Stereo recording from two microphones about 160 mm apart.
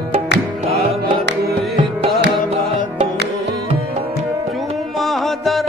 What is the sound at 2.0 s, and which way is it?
Music, 90° right.